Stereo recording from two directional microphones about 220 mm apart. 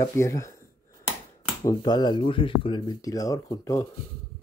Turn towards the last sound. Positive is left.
turn(degrees=15)  # may be behind; listen again after turning